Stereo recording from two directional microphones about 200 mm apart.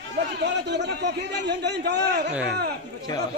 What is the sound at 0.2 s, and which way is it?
Speech, 60° right (ahead or behind).